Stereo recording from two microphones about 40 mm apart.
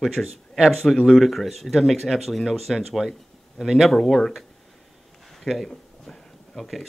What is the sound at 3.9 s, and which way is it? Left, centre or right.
Speech, centre.